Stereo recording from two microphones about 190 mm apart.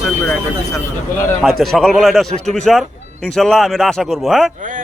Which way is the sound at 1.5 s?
Centre (ahead or behind).